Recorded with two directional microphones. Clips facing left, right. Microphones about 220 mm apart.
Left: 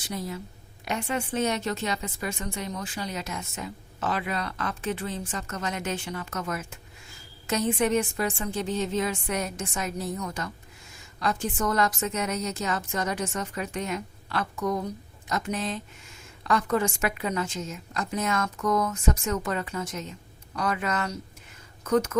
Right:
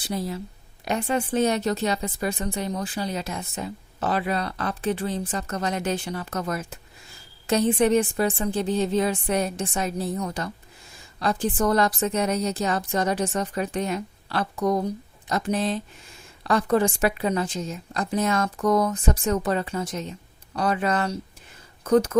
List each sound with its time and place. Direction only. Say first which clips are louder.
0.0 s a woman's voice: right 4 dB; 35° right (ahead or behind)